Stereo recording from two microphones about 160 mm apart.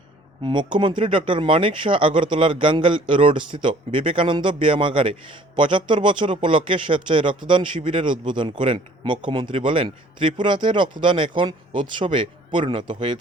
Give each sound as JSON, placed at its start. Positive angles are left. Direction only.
{"t": 0.4, "sound": "speech", "side_deg": -30}